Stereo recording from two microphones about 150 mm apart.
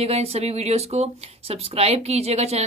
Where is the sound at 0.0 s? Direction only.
45° right (ahead or behind).